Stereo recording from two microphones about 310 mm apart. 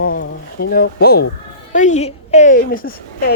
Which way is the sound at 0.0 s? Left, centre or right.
Left.